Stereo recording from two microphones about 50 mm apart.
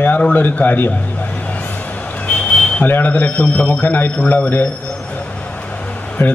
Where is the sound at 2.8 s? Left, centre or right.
Left.